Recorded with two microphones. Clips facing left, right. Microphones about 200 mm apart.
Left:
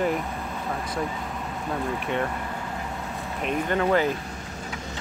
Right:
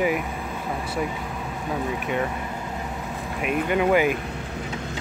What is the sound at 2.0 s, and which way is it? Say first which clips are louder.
Speech: right 1 dB; 5° right (ahead or behind).